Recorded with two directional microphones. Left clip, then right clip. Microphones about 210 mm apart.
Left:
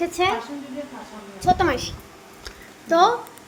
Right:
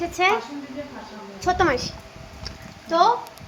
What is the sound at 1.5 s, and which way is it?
Speech, 10° right (ahead or behind).